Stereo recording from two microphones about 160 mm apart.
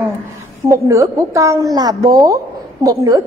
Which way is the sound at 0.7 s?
20° right (ahead or behind).